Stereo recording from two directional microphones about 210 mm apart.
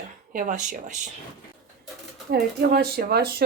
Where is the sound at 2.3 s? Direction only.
50° right (ahead or behind).